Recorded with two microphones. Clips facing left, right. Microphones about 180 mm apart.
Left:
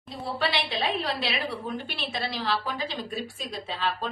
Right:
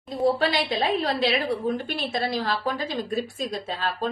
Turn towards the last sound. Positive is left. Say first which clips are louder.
# right 2 dB
turn(degrees=-40)  # may be behind; listen again after turning